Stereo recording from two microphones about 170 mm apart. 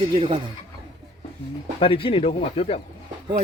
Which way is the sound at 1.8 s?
30° left (ahead or behind).